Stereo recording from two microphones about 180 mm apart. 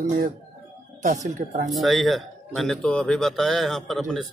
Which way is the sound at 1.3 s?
50° right (ahead or behind).